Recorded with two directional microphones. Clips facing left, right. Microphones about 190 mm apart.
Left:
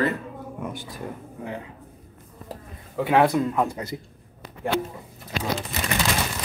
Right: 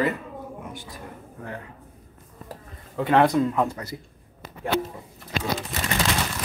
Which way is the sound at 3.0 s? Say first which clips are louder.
Even; 5° left (ahead or behind).